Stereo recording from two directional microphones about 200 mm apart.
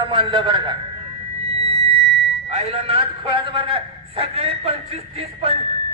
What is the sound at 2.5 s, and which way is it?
A man's voice, 30° right (ahead or behind).